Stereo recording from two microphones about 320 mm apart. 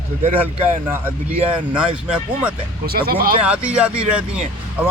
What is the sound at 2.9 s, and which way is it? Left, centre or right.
Speech, right.